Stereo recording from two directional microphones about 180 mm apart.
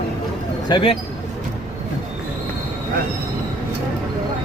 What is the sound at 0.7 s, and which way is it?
Speech, 25° left (ahead or behind).